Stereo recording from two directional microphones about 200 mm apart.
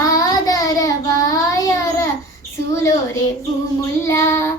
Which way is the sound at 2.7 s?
15° left (ahead or behind).